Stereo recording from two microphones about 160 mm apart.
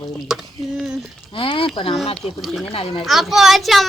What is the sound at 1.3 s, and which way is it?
Speech, 35° left (ahead or behind).